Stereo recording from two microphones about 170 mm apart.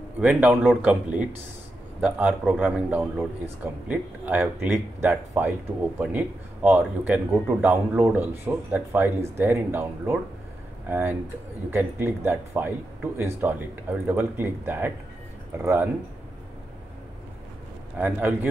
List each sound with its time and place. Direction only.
0.2 s a man's voice: 5° right (ahead or behind)
17.9 s a man's voice: 10° right (ahead or behind)